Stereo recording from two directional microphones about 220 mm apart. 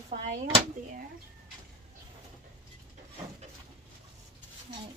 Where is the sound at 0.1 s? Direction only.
25° right (ahead or behind).